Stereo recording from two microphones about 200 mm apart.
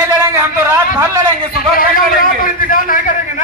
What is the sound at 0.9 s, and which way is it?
Speech, 15° right (ahead or behind).